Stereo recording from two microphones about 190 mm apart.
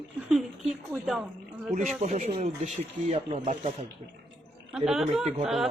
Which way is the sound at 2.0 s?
40° right (ahead or behind).